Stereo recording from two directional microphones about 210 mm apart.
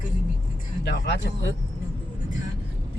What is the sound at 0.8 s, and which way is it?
Speech, 55° left (ahead or behind).